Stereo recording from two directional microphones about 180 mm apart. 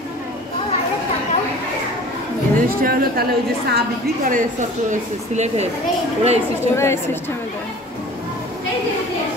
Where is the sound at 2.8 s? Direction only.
55° right (ahead or behind); by 5.7 s 40° right (ahead or behind).